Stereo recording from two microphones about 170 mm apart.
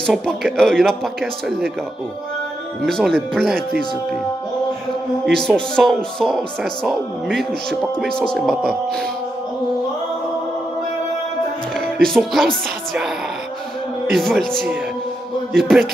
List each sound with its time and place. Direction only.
0.0 s speech: centre (ahead or behind)
2.8 s speech: centre (ahead or behind)
5.2 s speech: centre (ahead or behind)
11.8 s speech: 5° left (ahead or behind)
14.1 s speech: centre (ahead or behind)